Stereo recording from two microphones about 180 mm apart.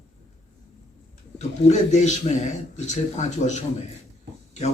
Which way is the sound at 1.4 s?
40° left (ahead or behind).